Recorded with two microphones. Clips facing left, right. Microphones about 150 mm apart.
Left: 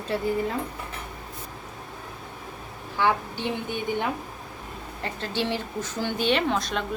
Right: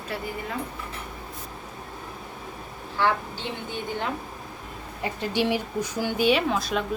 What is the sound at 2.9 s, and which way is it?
A woman's voice, 15° left (ahead or behind).